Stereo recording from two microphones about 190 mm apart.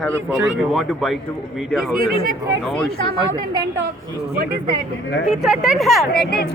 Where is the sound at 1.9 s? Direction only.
50° right (ahead or behind).